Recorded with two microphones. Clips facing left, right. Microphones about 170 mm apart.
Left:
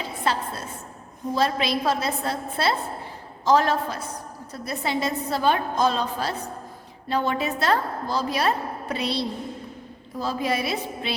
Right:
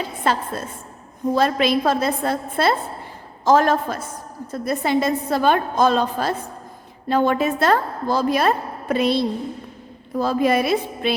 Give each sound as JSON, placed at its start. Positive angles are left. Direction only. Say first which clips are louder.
{"t": 0.3, "sound": "a woman's voice", "louder": "right 4 dB", "side_deg": -50}